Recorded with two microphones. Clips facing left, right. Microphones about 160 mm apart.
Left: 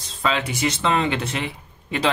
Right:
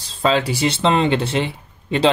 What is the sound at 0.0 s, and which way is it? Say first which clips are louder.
Speech: right 6 dB; 30° right (ahead or behind).